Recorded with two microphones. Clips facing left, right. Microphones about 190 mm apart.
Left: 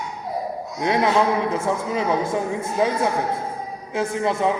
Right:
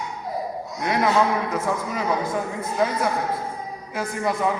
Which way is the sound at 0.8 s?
25° left (ahead or behind).